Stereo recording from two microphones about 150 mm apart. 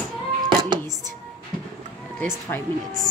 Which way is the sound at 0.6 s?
25° right (ahead or behind).